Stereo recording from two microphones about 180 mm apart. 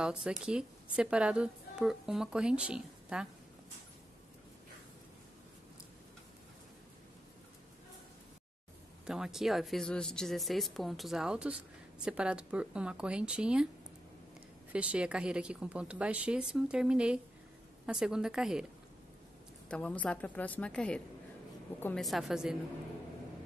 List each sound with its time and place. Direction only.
0.0 s a woman's voice: 5° right (ahead or behind)
9.0 s a woman's voice: 5° right (ahead or behind)
14.7 s a woman's voice: 5° right (ahead or behind)
19.7 s a woman's voice: 5° left (ahead or behind)
22.0 s a woman's voice: centre (ahead or behind)